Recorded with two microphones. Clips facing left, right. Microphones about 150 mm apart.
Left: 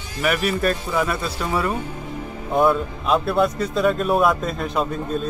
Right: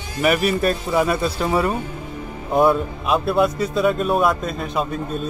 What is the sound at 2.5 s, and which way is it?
Speech, 5° right (ahead or behind).